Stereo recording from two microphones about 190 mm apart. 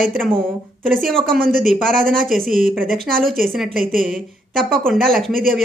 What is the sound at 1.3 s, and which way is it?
Speech, 50° right (ahead or behind).